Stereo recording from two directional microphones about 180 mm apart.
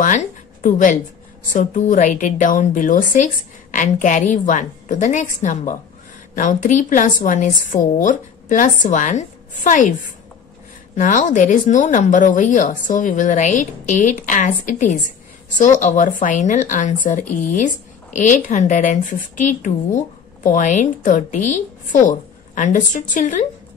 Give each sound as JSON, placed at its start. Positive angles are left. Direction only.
{"t": 0.0, "sound": "music", "side_deg": 45}
{"t": 1.5, "sound": "a woman's voice", "side_deg": 45}
{"t": 11.0, "sound": "a woman's voice", "side_deg": 45}